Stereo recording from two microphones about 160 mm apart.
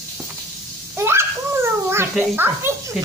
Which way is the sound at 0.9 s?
15° right (ahead or behind).